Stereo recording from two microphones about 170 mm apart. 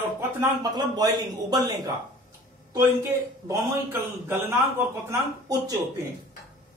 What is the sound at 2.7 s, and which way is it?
Speech, 15° right (ahead or behind).